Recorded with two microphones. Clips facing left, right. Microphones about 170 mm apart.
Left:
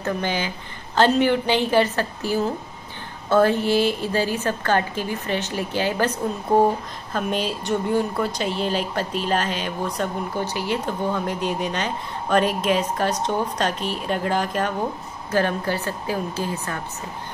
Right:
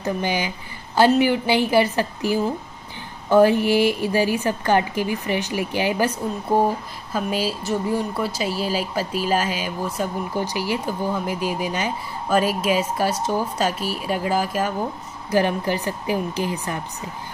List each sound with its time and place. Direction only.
0.0 s a woman's voice: 10° right (ahead or behind)